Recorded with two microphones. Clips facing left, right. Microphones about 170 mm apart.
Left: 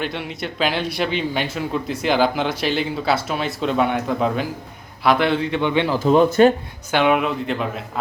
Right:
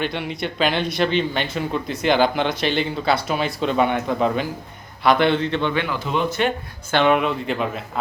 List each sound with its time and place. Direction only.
0.0 s a man's voice: centre (ahead or behind)
6.0 s speech: 40° left (ahead or behind)
6.9 s speech: 5° left (ahead or behind)